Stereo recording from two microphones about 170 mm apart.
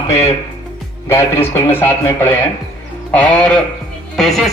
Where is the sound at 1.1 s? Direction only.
15° left (ahead or behind).